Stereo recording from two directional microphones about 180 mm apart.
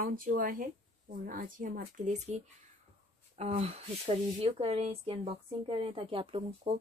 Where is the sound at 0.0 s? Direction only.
50° right (ahead or behind).